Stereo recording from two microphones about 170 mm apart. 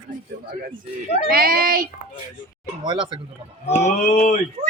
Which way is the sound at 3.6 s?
40° left (ahead or behind).